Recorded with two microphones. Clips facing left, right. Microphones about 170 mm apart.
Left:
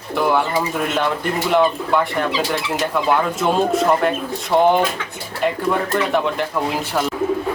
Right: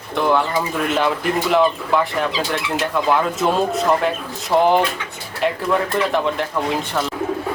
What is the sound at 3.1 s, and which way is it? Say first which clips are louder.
Speech: even; centre (ahead or behind).